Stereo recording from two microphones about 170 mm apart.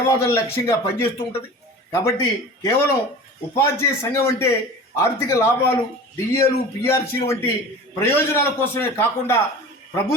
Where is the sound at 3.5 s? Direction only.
15° left (ahead or behind).